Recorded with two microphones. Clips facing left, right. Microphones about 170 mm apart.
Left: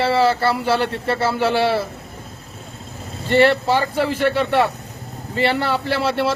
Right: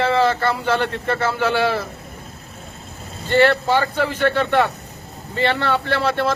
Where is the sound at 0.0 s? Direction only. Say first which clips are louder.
Even; 30° left (ahead or behind).